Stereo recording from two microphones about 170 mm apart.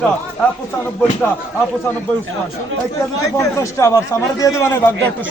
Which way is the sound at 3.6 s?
15° left (ahead or behind).